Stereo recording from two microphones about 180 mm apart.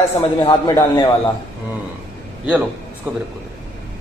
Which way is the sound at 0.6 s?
15° left (ahead or behind).